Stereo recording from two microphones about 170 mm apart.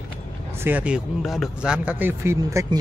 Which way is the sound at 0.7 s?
10° right (ahead or behind).